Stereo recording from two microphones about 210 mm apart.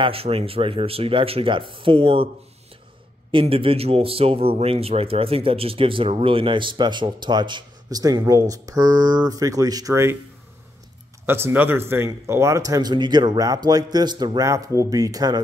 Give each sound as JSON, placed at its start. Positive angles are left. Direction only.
{"t": 0.0, "sound": "a man's voice", "side_deg": -25}
{"t": 3.3, "sound": "a man's voice", "side_deg": -25}
{"t": 11.2, "sound": "speech", "side_deg": -10}